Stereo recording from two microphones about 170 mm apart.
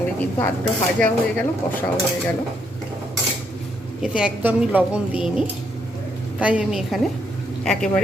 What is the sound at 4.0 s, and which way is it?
A woman's voice, 5° right (ahead or behind).